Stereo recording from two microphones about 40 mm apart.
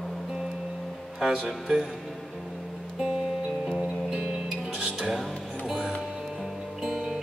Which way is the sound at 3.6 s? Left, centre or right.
Right.